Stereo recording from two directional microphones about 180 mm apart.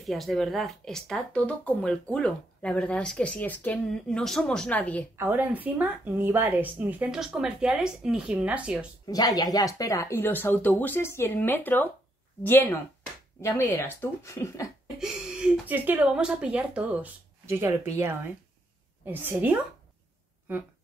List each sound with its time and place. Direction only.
0.0 s speech: centre (ahead or behind)
5.1 s speech: 10° right (ahead or behind)
9.0 s speech: 20° left (ahead or behind)
15.0 s speech: 5° right (ahead or behind)